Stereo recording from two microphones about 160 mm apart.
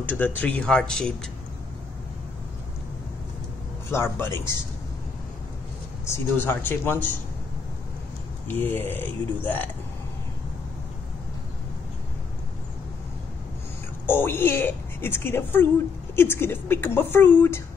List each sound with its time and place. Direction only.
0.2 s speech: 10° left (ahead or behind)
3.9 s a woman's voice: 15° left (ahead or behind)
6.0 s a woman's voice: 15° left (ahead or behind)
8.5 s a woman's voice: 10° left (ahead or behind)
14.0 s a woman's voice: 15° left (ahead or behind)